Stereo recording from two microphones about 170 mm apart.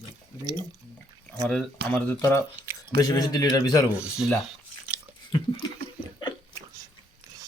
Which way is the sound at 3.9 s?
5° right (ahead or behind).